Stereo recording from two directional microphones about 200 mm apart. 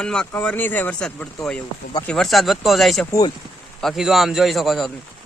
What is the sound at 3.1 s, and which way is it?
Speech, 20° left (ahead or behind).